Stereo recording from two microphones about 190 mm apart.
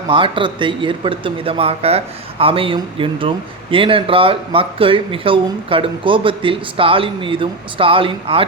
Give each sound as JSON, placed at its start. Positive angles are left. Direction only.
{"t": 0.1, "sound": "speech", "side_deg": -25}